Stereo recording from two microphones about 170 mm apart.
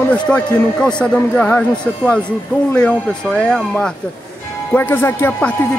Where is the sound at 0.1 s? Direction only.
5° left (ahead or behind).